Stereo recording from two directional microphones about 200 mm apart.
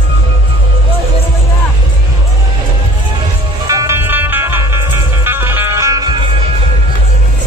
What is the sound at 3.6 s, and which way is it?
Music, 15° right (ahead or behind).